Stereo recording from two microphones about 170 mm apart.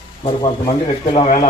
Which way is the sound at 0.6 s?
35° left (ahead or behind).